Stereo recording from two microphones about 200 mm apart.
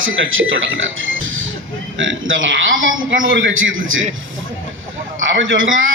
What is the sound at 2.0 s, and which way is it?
A man's voice, 75° right (ahead or behind).